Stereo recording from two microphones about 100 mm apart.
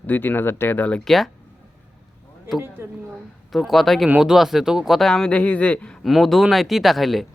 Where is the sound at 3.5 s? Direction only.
Centre (ahead or behind).